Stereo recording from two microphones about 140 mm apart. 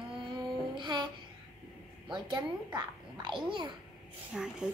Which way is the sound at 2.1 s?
30° right (ahead or behind).